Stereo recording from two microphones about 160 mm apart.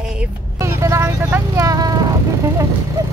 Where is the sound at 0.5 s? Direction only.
15° right (ahead or behind).